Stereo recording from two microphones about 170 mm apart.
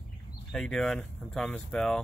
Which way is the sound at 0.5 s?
5° left (ahead or behind).